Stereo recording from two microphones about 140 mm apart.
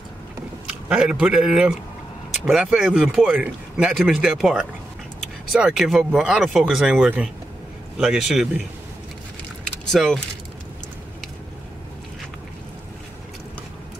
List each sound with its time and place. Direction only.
0.7 s a man's voice: 5° right (ahead or behind)
9.8 s speech: 5° left (ahead or behind)